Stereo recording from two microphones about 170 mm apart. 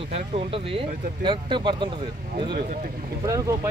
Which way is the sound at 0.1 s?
35° right (ahead or behind).